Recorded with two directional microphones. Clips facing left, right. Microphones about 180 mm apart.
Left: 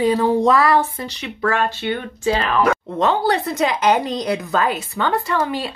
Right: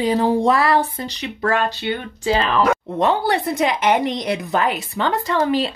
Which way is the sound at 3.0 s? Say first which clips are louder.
Left 1 dB; 15° right (ahead or behind).